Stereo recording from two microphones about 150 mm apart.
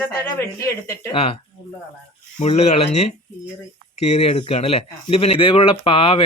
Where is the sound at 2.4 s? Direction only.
45° left (ahead or behind).